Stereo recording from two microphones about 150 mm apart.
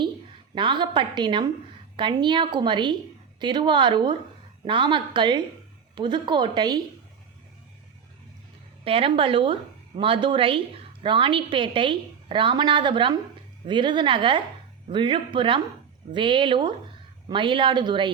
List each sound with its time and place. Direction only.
0.5 s a woman's voice: 30° right (ahead or behind)
8.8 s a woman's voice: 40° right (ahead or behind)